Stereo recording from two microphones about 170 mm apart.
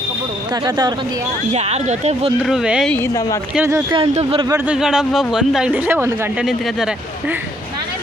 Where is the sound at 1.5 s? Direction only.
40° right (ahead or behind).